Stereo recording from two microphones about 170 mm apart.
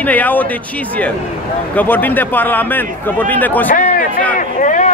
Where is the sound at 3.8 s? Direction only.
50° left (ahead or behind).